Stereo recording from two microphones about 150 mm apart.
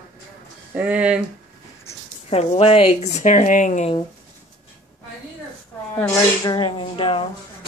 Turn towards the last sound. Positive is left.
turn(degrees=35)  # may be behind; listen again after turning